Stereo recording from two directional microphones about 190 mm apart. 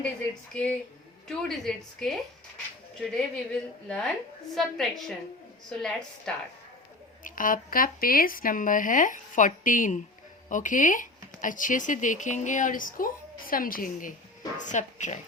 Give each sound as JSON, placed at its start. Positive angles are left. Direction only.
{"t": 0.5, "sound": "a woman's voice", "side_deg": 5}
{"t": 7.3, "sound": "speech", "side_deg": 45}